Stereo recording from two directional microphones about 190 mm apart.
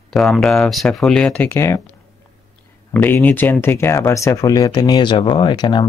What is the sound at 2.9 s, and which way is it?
Speech, 10° left (ahead or behind).